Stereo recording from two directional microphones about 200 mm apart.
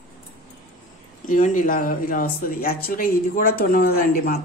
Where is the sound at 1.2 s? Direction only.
40° left (ahead or behind).